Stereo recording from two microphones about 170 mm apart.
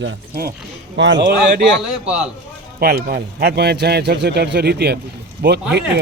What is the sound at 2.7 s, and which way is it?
A man's voice, 65° right (ahead or behind).